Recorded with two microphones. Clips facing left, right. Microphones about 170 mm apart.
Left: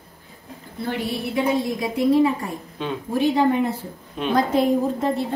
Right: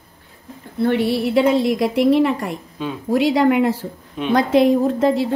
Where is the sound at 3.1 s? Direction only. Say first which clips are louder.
Right 4 dB; 90° right.